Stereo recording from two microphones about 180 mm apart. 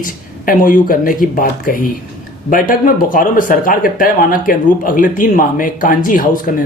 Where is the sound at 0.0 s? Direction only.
50° left (ahead or behind).